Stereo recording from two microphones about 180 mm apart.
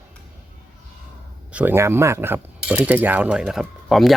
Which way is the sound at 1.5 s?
10° right (ahead or behind).